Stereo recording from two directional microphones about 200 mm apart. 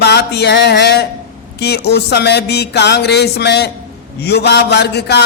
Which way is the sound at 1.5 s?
55° left (ahead or behind).